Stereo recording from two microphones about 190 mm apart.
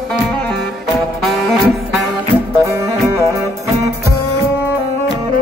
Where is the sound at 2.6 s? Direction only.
15° right (ahead or behind).